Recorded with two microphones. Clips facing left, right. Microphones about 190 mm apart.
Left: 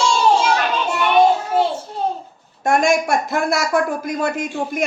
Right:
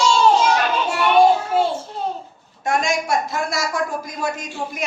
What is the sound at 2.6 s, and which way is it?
A woman's voice, 50° left (ahead or behind).